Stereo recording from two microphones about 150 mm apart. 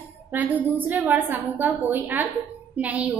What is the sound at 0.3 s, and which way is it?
A woman's voice, 10° right (ahead or behind).